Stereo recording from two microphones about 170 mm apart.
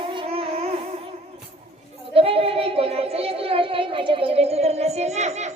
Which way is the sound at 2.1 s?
35° right (ahead or behind).